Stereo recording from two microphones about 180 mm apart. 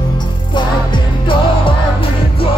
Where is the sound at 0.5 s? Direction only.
25° left (ahead or behind).